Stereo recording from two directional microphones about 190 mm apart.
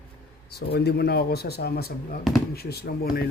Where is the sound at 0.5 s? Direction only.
55° left (ahead or behind).